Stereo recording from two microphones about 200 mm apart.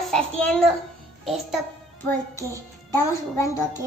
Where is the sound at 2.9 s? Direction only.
15° left (ahead or behind).